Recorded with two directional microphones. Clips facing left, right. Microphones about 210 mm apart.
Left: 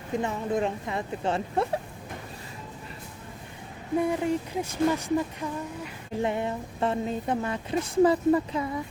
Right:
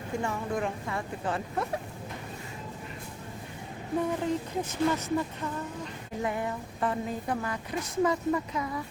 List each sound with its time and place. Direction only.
0.1 s speech: 20° left (ahead or behind)
4.0 s speech: 10° left (ahead or behind)
6.2 s speech: 25° left (ahead or behind)